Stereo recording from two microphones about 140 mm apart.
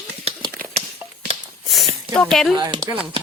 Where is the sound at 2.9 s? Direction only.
15° right (ahead or behind).